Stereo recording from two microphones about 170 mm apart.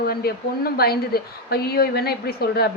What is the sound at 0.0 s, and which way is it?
A woman's voice, 65° left (ahead or behind).